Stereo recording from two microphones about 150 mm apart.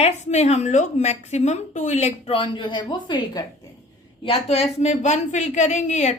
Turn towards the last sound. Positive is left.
turn(degrees=50)  # may be behind; listen again after turning